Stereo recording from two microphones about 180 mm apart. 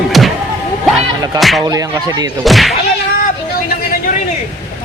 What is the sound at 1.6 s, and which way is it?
Speech, 20° right (ahead or behind).